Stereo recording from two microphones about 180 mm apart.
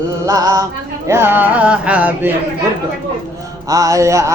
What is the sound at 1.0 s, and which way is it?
Male singing, 15° right (ahead or behind).